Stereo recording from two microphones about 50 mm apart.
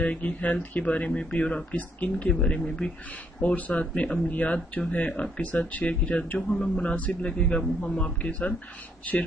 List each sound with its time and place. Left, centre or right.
0.0 s a man's voice: left
3.3 s a man's voice: left